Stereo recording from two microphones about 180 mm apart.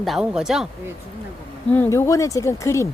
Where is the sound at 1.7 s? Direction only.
15° left (ahead or behind).